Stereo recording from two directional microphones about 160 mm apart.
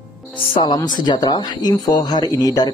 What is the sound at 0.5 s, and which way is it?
Speech, 30° left (ahead or behind).